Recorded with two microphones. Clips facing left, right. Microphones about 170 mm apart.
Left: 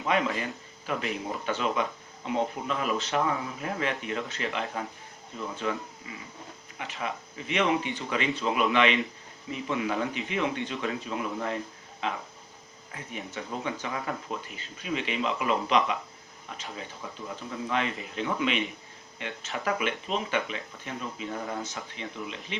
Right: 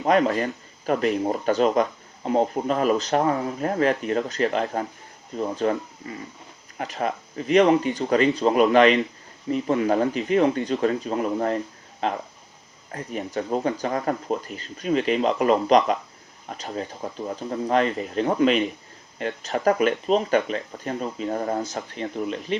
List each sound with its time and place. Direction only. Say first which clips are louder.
0.0 s speech: right 8 dB; 40° right (ahead or behind)